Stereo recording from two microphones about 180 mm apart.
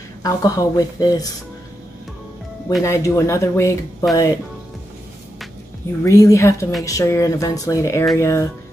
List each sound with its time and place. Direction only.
0.2 s speech: 20° left (ahead or behind)
2.8 s speech: 15° left (ahead or behind)
6.0 s speech: 15° left (ahead or behind)